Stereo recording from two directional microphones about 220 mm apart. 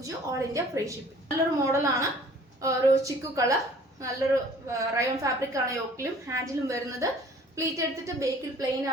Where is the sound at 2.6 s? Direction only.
15° right (ahead or behind).